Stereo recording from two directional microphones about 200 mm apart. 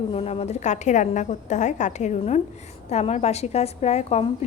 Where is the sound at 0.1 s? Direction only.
30° left (ahead or behind).